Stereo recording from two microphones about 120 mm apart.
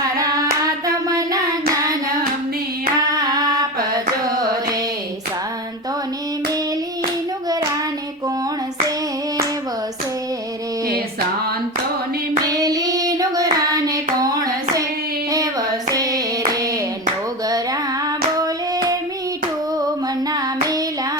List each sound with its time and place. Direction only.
0.2 s hands: 30° right (ahead or behind)
3.1 s music: 30° right (ahead or behind)
12.4 s child singing: 30° right (ahead or behind)
15.3 s hands: 30° right (ahead or behind)
17.5 s child singing: 30° right (ahead or behind)
20.3 s child singing: 30° right (ahead or behind)